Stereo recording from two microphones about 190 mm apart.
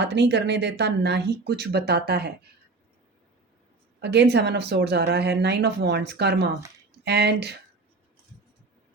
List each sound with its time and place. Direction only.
0.0 s speech: 60° right (ahead or behind)
4.0 s speech: 60° right (ahead or behind)